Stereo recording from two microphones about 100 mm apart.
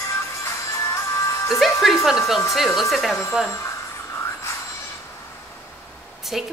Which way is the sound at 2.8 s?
Centre (ahead or behind).